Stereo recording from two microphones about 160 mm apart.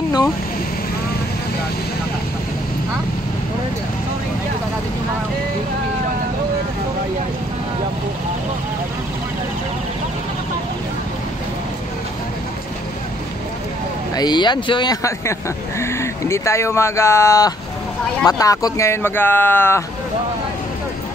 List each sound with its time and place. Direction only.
14.1 s speech: 25° left (ahead or behind)